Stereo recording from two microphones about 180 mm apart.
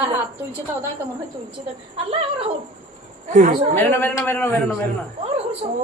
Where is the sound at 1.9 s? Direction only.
30° right (ahead or behind).